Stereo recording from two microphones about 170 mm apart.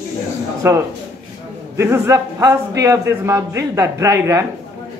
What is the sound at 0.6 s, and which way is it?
A man's voice, 15° right (ahead or behind).